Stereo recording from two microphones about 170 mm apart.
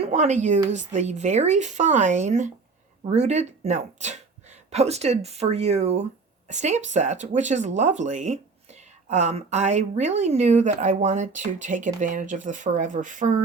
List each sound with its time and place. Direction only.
0.0 s a woman's voice: 45° right (ahead or behind)